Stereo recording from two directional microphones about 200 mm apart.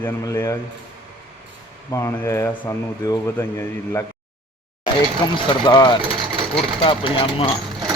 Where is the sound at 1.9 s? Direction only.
15° left (ahead or behind).